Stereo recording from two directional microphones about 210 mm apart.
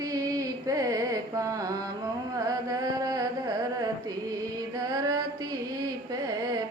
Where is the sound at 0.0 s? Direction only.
15° right (ahead or behind).